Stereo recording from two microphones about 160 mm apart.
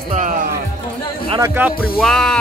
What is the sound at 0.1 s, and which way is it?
Music, 55° right (ahead or behind).